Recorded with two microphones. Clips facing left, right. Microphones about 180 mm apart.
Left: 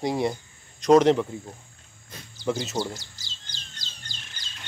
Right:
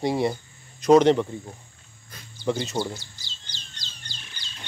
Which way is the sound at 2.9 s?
45° left (ahead or behind).